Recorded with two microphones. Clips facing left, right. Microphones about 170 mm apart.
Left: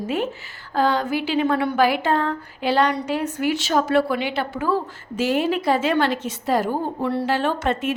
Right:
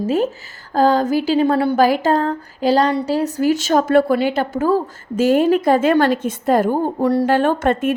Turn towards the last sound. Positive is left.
turn(degrees=-50)  # may be behind; listen again after turning